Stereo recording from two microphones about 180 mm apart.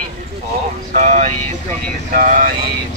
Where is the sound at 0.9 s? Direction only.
40° right (ahead or behind).